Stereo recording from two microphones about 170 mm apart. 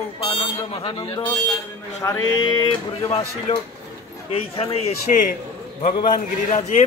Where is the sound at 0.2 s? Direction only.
30° left (ahead or behind).